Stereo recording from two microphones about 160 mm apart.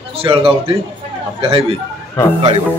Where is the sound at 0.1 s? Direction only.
35° right (ahead or behind).